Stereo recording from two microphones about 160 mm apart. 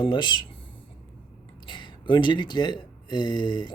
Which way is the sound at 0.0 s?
30° left (ahead or behind).